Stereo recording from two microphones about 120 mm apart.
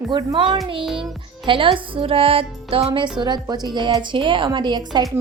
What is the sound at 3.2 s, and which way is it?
A woman's voice, 35° right (ahead or behind).